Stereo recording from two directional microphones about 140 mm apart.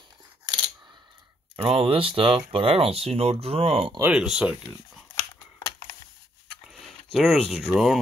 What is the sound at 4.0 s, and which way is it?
Speech, 5° right (ahead or behind).